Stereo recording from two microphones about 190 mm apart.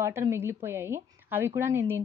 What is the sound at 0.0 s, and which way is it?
A woman's voice, 15° right (ahead or behind).